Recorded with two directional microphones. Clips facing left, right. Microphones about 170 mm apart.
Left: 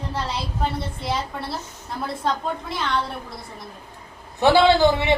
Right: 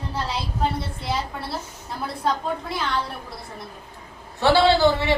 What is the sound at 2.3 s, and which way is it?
Speech, centre (ahead or behind).